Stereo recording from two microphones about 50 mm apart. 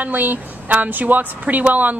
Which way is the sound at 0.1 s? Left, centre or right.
Right.